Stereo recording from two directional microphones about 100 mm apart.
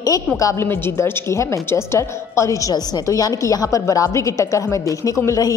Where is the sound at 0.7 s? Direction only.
20° left (ahead or behind).